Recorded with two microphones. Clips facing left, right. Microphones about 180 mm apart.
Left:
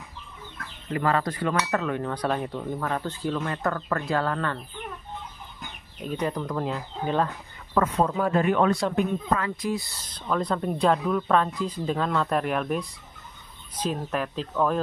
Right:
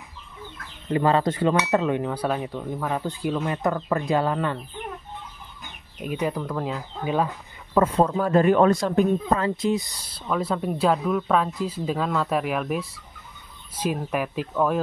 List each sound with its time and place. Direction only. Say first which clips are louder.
0.8 s cutlery: right 4 dB; 25° right (ahead or behind)
2.0 s speech: right 1 dB; 5° right (ahead or behind)
5.9 s speech: right 2 dB; 10° right (ahead or behind)
7.7 s speech: right 3 dB; 30° right (ahead or behind); by 14.8 s 5° right (ahead or behind)